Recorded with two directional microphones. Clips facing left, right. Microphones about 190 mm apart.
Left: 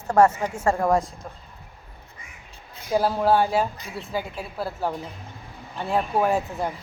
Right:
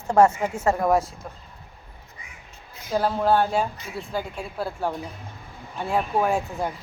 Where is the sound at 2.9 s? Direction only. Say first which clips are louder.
Left 1 dB; 5° left (ahead or behind).